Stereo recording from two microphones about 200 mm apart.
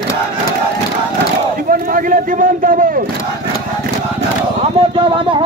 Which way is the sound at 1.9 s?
45° right (ahead or behind).